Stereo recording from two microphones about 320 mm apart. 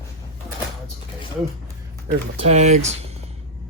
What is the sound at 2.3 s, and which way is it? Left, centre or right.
Speech, right.